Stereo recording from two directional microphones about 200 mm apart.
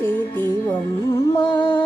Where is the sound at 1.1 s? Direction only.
20° left (ahead or behind).